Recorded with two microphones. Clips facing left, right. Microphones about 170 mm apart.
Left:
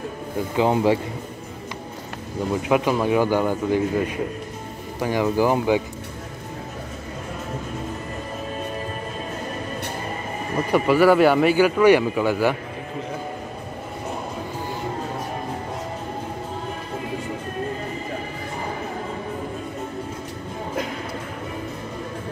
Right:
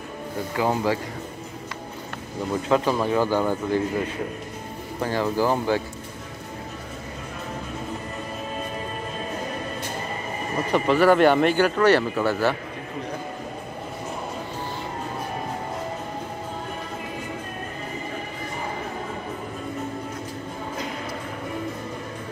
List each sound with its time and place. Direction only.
0.6 s speech: 20° left (ahead or behind)
2.5 s speech: 10° left (ahead or behind)
5.0 s speech: 15° left (ahead or behind)
10.7 s speech: 10° left (ahead or behind)